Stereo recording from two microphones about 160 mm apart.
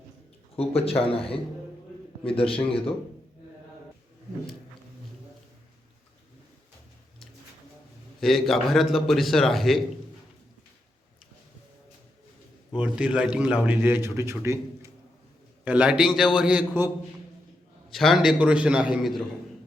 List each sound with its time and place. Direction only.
0.5 s a man's voice: 40° left (ahead or behind)
8.2 s a man's voice: centre (ahead or behind)
12.7 s a man's voice: 5° right (ahead or behind)
17.9 s a man's voice: centre (ahead or behind)